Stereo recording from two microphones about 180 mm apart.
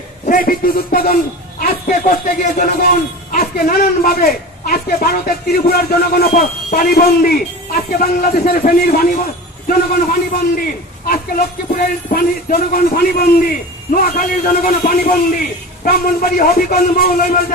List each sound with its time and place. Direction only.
0.3 s a man's voice: 55° left (ahead or behind)
11.1 s music: 50° left (ahead or behind)
13.9 s a man's voice: 55° left (ahead or behind)